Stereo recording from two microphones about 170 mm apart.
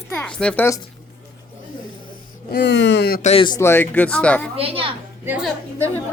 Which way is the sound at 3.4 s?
20° left (ahead or behind).